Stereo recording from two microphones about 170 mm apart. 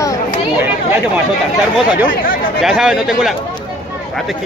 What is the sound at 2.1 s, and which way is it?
Speech, 55° left (ahead or behind).